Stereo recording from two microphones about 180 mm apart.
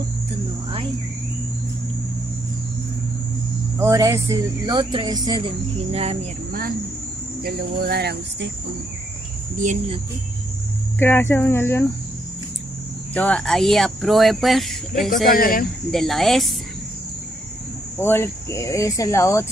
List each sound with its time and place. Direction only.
3.7 s speech: 15° right (ahead or behind)
5.9 s speech: 35° right (ahead or behind)
7.4 s speech: 60° right (ahead or behind)
11.0 s speech: 15° left (ahead or behind)
13.1 s speech: 10° left (ahead or behind)
15.2 s speech: 55° left (ahead or behind)
15.9 s speech: centre (ahead or behind)
17.9 s speech: 15° left (ahead or behind)